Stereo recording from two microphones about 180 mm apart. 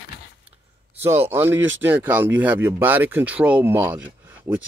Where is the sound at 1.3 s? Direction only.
15° right (ahead or behind).